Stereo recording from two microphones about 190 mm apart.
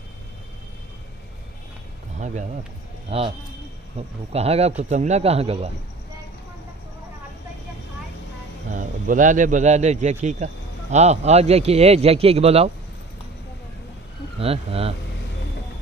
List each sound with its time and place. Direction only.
2.1 s a sound: 40° right (ahead or behind)
3.1 s a man's voice: 30° right (ahead or behind)
8.7 s a man's voice: 45° right (ahead or behind)
14.4 s a man's voice: 30° right (ahead or behind)